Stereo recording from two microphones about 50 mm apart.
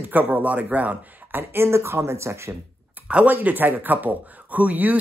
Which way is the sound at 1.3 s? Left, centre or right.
Right.